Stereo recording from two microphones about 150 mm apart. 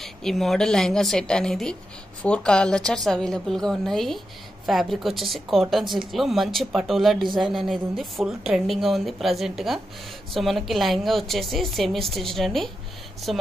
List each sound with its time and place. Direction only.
0.0 s speech: centre (ahead or behind)